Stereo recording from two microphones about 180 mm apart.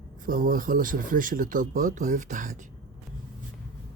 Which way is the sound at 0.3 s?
50° right (ahead or behind).